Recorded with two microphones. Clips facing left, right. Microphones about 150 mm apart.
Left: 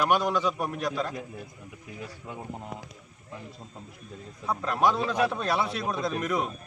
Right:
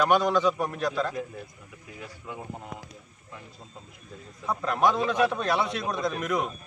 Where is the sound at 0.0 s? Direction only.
10° left (ahead or behind).